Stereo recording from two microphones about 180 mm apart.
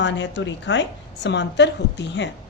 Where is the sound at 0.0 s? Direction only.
90° left.